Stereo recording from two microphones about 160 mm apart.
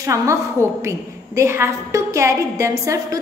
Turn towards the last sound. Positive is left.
turn(degrees=-20)  # may be behind; listen again after turning